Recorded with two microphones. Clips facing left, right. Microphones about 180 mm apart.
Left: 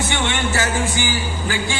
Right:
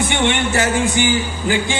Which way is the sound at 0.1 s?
20° right (ahead or behind).